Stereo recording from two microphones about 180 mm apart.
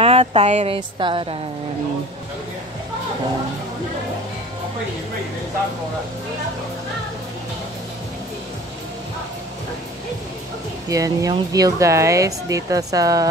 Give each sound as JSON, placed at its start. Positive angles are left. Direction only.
{"t": 0.0, "sound": "speech", "side_deg": -30}
{"t": 0.7, "sound": "speech", "side_deg": -25}
{"t": 10.9, "sound": "speech", "side_deg": -20}